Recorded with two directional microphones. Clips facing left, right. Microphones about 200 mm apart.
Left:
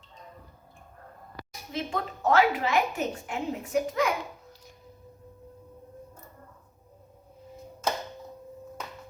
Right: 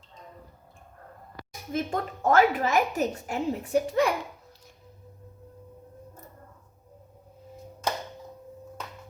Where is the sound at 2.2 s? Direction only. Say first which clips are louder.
Right 2 dB; 45° right (ahead or behind).